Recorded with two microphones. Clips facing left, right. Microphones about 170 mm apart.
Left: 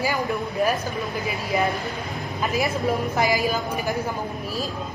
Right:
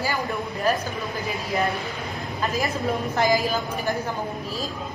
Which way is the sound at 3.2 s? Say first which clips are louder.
Right 3 dB; 15° left (ahead or behind).